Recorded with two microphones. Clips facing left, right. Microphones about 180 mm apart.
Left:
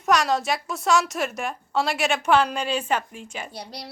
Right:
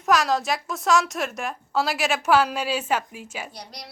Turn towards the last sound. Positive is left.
turn(degrees=30)  # may be behind; listen again after turning